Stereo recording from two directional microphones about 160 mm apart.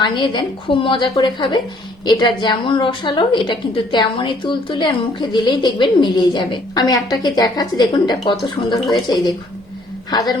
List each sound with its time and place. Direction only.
0.0 s a woman's voice: 30° left (ahead or behind)